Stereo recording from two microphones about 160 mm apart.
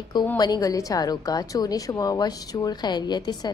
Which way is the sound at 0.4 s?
25° left (ahead or behind).